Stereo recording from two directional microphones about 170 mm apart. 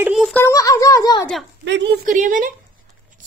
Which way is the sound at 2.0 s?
50° right (ahead or behind).